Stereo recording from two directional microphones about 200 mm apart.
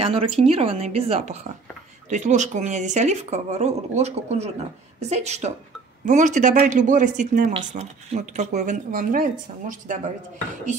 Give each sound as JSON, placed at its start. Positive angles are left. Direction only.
{"t": 0.0, "sound": "speech", "side_deg": -30}